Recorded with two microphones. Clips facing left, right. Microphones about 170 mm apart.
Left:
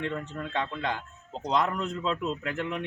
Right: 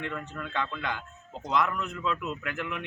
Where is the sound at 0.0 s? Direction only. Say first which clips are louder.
Left 3 dB; 30° left (ahead or behind).